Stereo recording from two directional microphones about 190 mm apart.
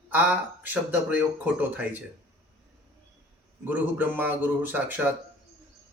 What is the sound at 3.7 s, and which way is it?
A man's voice, 10° right (ahead or behind).